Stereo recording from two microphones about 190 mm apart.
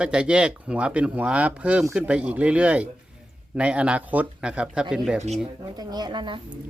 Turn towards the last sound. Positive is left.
turn(degrees=-25)  # may be behind; listen again after turning